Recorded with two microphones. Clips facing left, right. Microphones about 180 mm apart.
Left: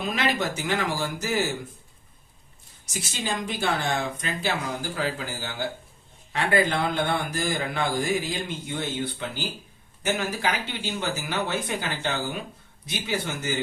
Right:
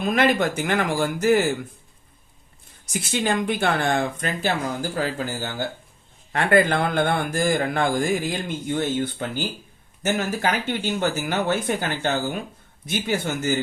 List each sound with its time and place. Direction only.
0.0 s speech: 50° right (ahead or behind)
2.8 s speech: 60° right (ahead or behind)